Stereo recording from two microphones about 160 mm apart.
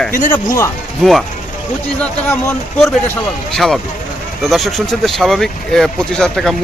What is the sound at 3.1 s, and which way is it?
Speech, 5° left (ahead or behind).